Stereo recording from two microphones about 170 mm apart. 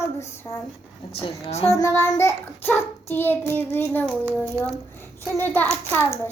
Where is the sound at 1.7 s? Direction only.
15° left (ahead or behind).